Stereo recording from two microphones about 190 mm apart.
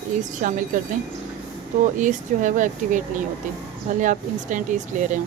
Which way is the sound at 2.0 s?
40° right (ahead or behind).